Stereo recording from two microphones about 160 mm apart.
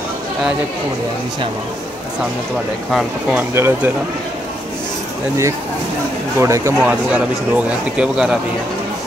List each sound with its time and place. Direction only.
2.9 s speech: 5° right (ahead or behind)
6.3 s speech: 20° right (ahead or behind)
6.8 s speech: 10° right (ahead or behind)